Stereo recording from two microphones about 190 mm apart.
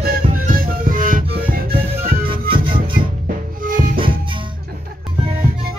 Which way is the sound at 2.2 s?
25° right (ahead or behind).